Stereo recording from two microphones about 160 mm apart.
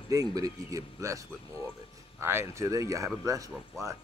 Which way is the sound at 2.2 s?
15° right (ahead or behind).